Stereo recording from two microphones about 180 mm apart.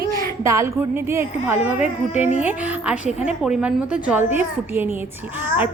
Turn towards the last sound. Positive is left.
turn(degrees=-10)  # may be behind; listen again after turning